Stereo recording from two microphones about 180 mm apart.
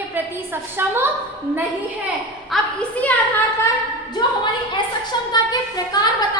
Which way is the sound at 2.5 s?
5° left (ahead or behind).